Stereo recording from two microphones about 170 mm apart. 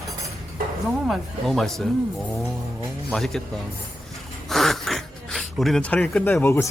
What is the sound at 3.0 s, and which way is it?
Speech, centre (ahead or behind).